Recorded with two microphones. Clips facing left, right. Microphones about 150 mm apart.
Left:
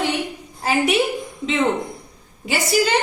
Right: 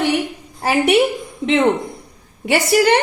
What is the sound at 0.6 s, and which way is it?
Speech, 65° right (ahead or behind).